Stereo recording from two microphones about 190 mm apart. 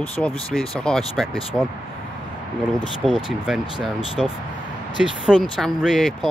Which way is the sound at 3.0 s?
5° right (ahead or behind).